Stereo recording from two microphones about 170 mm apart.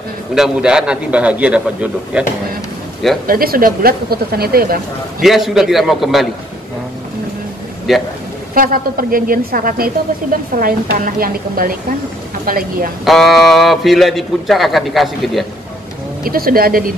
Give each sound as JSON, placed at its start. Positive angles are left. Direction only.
{"t": 0.3, "sound": "a man's voice", "side_deg": -5}
{"t": 3.3, "sound": "speech", "side_deg": -60}
{"t": 5.2, "sound": "a man's voice", "side_deg": 0}
{"t": 7.9, "sound": "a man's voice", "side_deg": 0}
{"t": 8.5, "sound": "speech", "side_deg": -55}
{"t": 13.0, "sound": "a man's voice", "side_deg": 0}
{"t": 16.3, "sound": "speech", "side_deg": -60}